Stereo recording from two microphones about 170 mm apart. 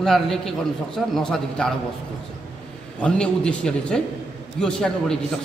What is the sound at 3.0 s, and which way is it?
A man's voice, 5° left (ahead or behind).